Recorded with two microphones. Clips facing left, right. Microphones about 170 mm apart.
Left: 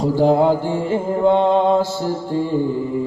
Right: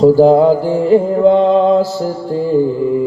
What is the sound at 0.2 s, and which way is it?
Mantra, 40° right (ahead or behind).